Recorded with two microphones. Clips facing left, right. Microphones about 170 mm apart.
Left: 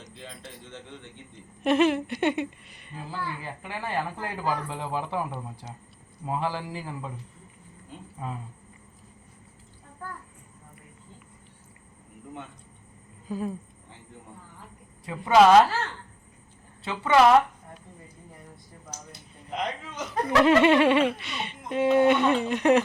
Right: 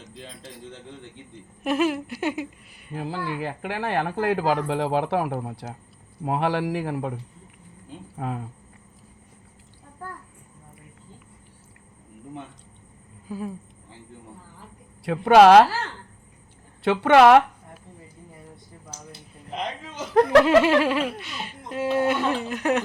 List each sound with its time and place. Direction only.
0.1 s a man's voice: 35° right (ahead or behind)
1.6 s speech: 5° right (ahead or behind)
2.9 s speech: 70° right (ahead or behind)
8.2 s speech: 70° right (ahead or behind)
13.2 s speech: 10° right (ahead or behind)
15.0 s speech: 70° right (ahead or behind)
16.8 s speech: 70° right (ahead or behind)
20.1 s speech: 80° right
20.4 s speech: centre (ahead or behind)